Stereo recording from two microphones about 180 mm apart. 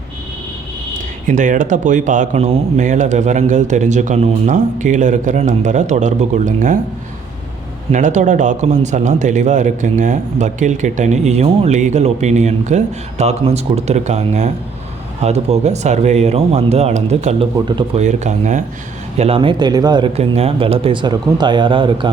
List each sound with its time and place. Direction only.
1.3 s speech: 45° right (ahead or behind)
7.9 s speech: 40° right (ahead or behind)
17.7 s speech: 25° right (ahead or behind)
18.0 s speech: 40° right (ahead or behind); by 20.1 s 20° right (ahead or behind)
20.1 s speech: 35° right (ahead or behind)